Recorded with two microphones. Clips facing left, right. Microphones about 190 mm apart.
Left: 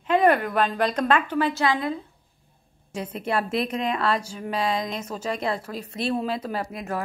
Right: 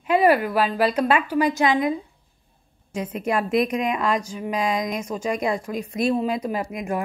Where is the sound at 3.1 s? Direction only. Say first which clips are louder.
Right 3 dB; 10° right (ahead or behind).